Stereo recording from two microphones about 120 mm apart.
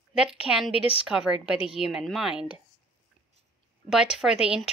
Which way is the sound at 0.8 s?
50° left (ahead or behind).